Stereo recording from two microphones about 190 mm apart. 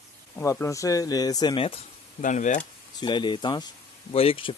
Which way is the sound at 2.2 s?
40° left (ahead or behind).